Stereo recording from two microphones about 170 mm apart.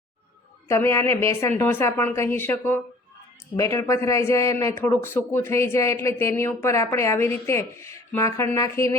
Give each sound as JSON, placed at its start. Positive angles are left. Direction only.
{"t": 0.7, "sound": "a man's voice", "side_deg": 15}